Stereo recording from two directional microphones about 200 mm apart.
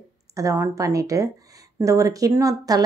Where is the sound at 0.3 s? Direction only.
15° right (ahead or behind).